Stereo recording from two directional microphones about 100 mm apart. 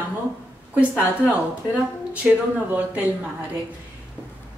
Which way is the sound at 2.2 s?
15° right (ahead or behind).